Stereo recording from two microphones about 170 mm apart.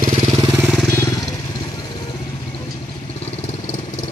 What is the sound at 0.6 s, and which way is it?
Vehicle, 5° right (ahead or behind).